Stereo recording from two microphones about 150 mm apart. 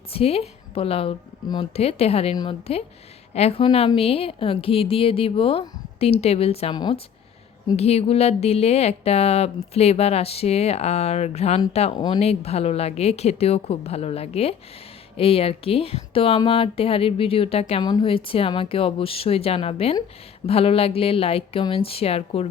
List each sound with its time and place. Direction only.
0.1 s a woman's voice: 40° left (ahead or behind)
2.3 s a woman's voice: 30° left (ahead or behind)
3.3 s a woman's voice: 40° left (ahead or behind)
11.9 s a woman's voice: 30° left (ahead or behind)
12.2 s a woman's voice: 45° left (ahead or behind)